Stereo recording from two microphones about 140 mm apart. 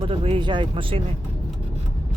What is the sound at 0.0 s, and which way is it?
Speech, 40° right (ahead or behind).